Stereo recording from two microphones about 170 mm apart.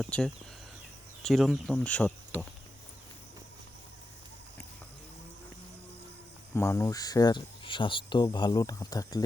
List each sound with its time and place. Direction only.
0.0 s speech: 5° left (ahead or behind)
6.5 s speech: 15° left (ahead or behind)